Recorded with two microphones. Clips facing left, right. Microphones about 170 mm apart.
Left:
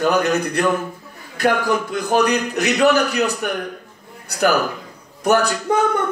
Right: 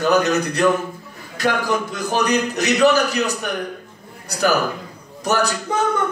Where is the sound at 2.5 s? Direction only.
60° left (ahead or behind).